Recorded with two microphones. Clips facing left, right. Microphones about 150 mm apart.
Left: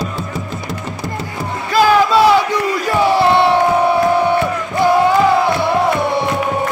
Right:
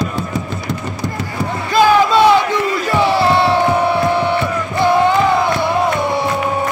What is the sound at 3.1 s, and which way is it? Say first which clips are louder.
Battle cry: left 3 dB; 20° left (ahead or behind).